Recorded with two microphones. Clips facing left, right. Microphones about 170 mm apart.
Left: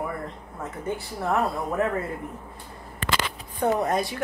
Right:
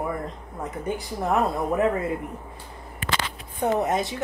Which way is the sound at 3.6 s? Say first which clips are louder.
Even; 20° right (ahead or behind).